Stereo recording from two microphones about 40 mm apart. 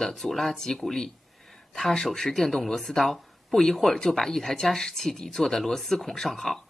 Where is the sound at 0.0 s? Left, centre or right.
Centre.